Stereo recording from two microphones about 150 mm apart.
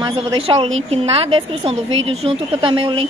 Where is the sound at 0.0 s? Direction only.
35° right (ahead or behind).